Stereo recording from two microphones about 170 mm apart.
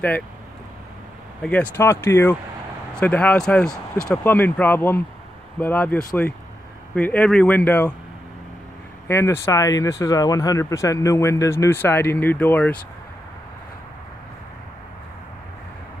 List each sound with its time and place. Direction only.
1.4 s speech: 10° left (ahead or behind)
9.0 s speech: 15° left (ahead or behind)